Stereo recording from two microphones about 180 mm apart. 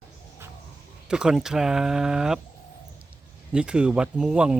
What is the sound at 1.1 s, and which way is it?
Speech, 5° right (ahead or behind).